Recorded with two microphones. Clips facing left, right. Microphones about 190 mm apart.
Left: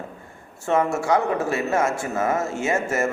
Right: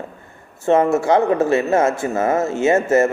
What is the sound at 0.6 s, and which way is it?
Speech, 20° right (ahead or behind).